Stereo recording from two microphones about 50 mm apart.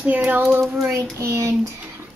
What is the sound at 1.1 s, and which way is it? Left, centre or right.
Speech, right.